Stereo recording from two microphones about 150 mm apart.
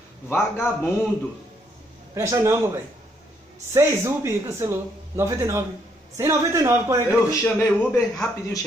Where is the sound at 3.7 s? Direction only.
15° right (ahead or behind).